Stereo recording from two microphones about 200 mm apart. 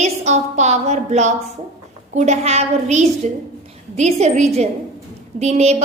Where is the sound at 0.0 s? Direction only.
35° right (ahead or behind).